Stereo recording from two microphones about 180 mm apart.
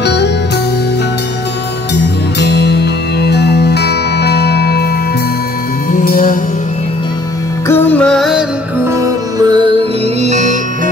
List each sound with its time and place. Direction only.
0.0 s music: 70° left (ahead or behind)
2.3 s music: 65° left (ahead or behind)
5.9 s music: 50° left (ahead or behind)
7.6 s music: 10° left (ahead or behind)
8.8 s music: 15° right (ahead or behind)
10.2 s music: 40° right (ahead or behind)